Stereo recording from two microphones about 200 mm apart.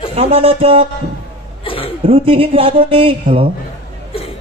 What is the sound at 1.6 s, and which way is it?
Chuckle, 25° left (ahead or behind).